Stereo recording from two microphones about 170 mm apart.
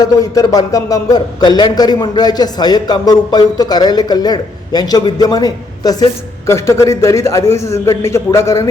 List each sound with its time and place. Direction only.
0.0 s a man's voice: 20° left (ahead or behind)